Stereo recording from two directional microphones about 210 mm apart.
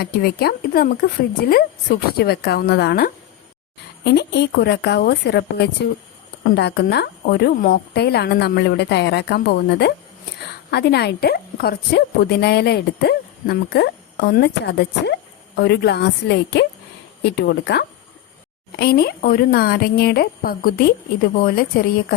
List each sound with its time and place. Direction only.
0.0 s a woman's voice: 45° left (ahead or behind)
2.1 s a woman's voice: 50° left (ahead or behind)